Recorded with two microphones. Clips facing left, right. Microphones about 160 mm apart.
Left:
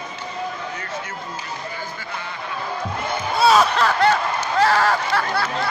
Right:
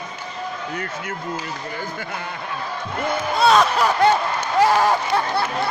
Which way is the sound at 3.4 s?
5° left (ahead or behind).